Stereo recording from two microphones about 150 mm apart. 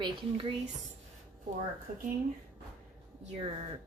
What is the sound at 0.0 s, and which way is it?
Speech, 35° right (ahead or behind).